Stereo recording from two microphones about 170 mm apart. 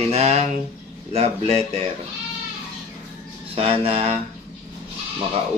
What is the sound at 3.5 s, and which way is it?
Speech, 35° right (ahead or behind).